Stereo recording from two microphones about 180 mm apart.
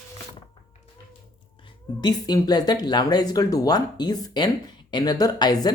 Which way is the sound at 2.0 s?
20° left (ahead or behind).